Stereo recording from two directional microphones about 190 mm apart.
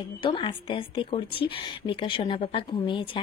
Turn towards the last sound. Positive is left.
turn(degrees=25)  # may be behind; listen again after turning